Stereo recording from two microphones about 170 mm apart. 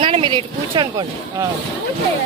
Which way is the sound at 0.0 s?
30° right (ahead or behind).